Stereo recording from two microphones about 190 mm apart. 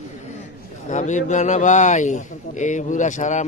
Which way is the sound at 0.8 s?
40° left (ahead or behind).